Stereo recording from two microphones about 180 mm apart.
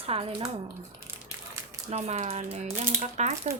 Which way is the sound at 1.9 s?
35° right (ahead or behind).